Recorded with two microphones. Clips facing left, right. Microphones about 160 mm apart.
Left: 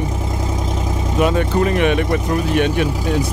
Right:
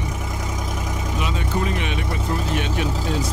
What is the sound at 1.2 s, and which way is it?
Speech, 60° left (ahead or behind).